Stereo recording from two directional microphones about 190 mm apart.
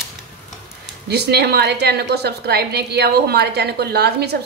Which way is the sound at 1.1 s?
60° right (ahead or behind).